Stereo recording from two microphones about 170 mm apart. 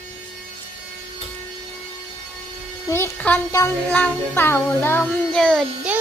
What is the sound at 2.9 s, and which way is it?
Music, 10° left (ahead or behind).